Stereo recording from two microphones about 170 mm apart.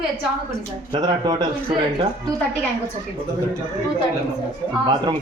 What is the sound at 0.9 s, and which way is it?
A man's voice, 25° right (ahead or behind).